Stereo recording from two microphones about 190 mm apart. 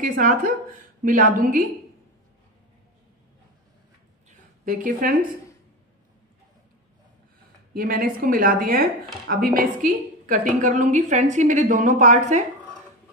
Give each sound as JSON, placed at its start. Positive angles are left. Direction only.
{"t": 0.0, "sound": "a woman's voice", "side_deg": -45}
{"t": 4.6, "sound": "a woman's voice", "side_deg": -45}
{"t": 7.7, "sound": "a woman's voice", "side_deg": -50}